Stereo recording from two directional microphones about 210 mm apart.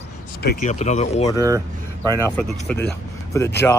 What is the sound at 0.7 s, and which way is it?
Speech, 35° left (ahead or behind).